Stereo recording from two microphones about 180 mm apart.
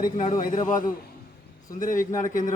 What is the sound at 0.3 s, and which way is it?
Speech, 45° left (ahead or behind).